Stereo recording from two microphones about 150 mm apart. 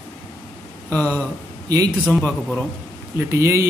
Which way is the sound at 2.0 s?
Centre (ahead or behind).